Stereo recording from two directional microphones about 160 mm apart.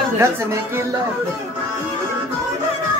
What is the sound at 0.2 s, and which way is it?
Speech, 15° right (ahead or behind).